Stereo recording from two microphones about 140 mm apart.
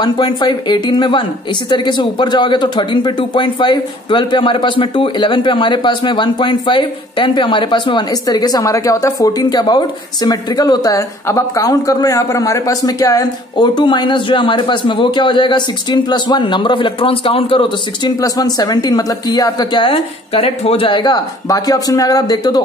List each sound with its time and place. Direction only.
0.0 s speech: 30° left (ahead or behind)